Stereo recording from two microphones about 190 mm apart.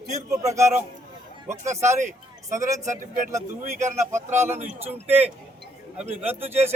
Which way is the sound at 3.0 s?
45° right (ahead or behind).